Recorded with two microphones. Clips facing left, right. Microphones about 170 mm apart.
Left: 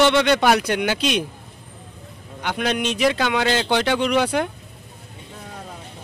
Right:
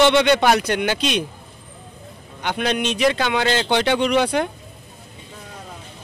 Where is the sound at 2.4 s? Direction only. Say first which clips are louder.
Right 1 dB; 5° left (ahead or behind).